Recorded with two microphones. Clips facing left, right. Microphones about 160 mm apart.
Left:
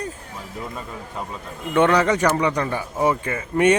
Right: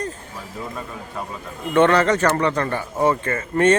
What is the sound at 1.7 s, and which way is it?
Speech, 10° left (ahead or behind).